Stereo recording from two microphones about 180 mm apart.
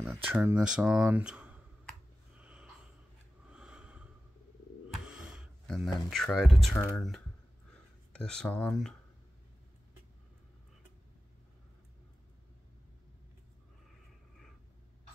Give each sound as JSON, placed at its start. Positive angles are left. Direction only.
{"t": 0.0, "sound": "speech", "side_deg": -10}
{"t": 2.3, "sound": "snort", "side_deg": -5}
{"t": 5.0, "sound": "a sound", "side_deg": -5}
{"t": 6.1, "sound": "speech", "side_deg": 0}
{"t": 8.1, "sound": "speech", "side_deg": 5}